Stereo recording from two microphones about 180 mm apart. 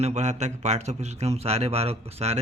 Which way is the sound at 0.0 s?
40° right (ahead or behind).